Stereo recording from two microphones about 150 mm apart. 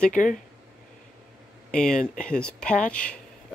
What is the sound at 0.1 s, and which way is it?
Speech, 60° left (ahead or behind).